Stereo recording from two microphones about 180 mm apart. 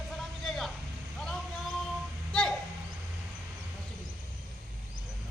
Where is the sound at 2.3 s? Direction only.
5° left (ahead or behind).